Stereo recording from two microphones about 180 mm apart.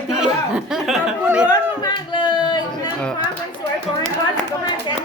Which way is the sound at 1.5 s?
25° left (ahead or behind).